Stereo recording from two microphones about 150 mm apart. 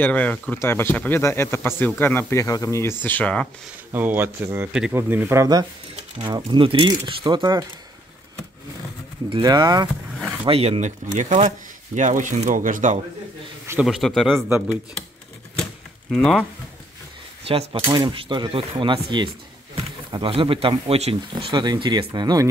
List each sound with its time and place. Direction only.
0.0 s speech: 10° left (ahead or behind)
3.9 s speech: 15° right (ahead or behind); by 7.4 s 30° right (ahead or behind)
9.3 s speech: 30° right (ahead or behind)
10.4 s speech: 40° right (ahead or behind); by 13.0 s 60° right (ahead or behind)
13.8 s a man's voice: centre (ahead or behind)
15.6 s a sound: centre (ahead or behind)
17.5 s speech: 40° right (ahead or behind)